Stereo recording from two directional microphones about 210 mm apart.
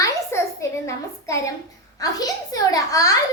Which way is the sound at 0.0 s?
15° left (ahead or behind).